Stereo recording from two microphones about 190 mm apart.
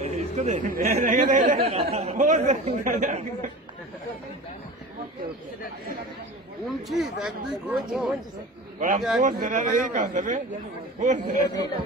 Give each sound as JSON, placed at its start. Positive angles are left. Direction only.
{"t": 0.0, "sound": "speech", "side_deg": -35}
{"t": 1.6, "sound": "speech", "side_deg": -30}
{"t": 6.9, "sound": "speech", "side_deg": 0}
{"t": 8.7, "sound": "a man's voice", "side_deg": -45}